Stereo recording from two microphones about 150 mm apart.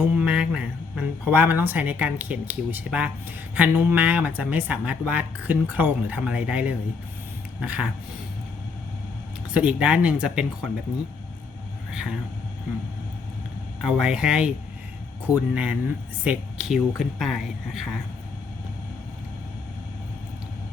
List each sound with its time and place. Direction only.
0.2 s speech: 5° right (ahead or behind)
9.5 s speech: 10° right (ahead or behind)
11.9 s speech: 5° right (ahead or behind)
13.8 s a man's voice: 5° right (ahead or behind)